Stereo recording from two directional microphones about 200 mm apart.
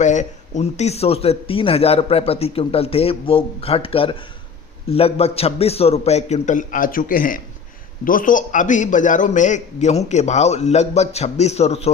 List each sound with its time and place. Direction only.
0.0 s a man's voice: 35° left (ahead or behind)